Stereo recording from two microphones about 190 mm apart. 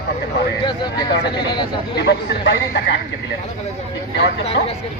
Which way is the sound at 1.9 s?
60° left (ahead or behind).